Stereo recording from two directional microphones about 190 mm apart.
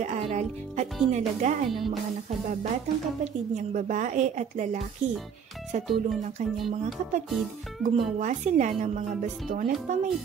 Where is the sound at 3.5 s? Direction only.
40° right (ahead or behind).